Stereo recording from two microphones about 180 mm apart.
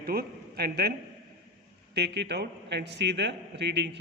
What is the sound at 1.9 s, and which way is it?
A man's voice, 70° right (ahead or behind).